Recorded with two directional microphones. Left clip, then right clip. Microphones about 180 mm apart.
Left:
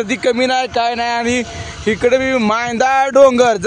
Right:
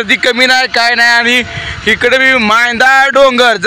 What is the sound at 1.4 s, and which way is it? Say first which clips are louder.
Speech: right 8 dB; 20° right (ahead or behind).